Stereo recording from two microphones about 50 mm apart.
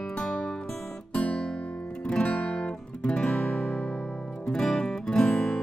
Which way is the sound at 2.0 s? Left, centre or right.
Left.